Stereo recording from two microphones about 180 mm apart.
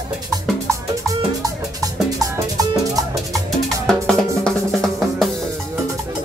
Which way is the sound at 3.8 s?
5° left (ahead or behind).